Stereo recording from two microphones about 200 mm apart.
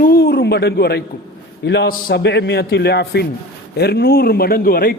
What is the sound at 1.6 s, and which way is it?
A man's voice, 60° left (ahead or behind).